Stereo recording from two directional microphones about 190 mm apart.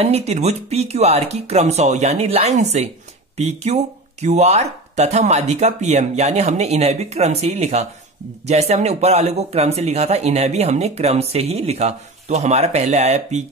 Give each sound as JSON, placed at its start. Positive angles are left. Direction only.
{"t": 0.0, "sound": "speech", "side_deg": -35}